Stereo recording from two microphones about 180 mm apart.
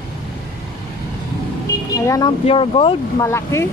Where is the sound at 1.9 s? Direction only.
20° left (ahead or behind).